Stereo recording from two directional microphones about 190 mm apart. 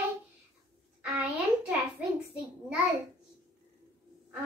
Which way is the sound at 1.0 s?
5° right (ahead or behind).